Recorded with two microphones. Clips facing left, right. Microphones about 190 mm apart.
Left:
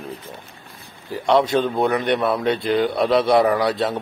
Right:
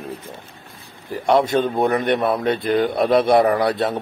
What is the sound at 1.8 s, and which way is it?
A man's voice, 50° right (ahead or behind).